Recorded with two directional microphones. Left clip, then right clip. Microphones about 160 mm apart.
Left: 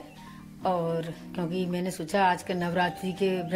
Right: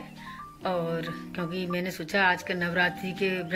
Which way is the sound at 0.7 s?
40° left (ahead or behind).